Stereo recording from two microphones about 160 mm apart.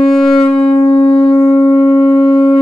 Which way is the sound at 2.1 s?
30° left (ahead or behind).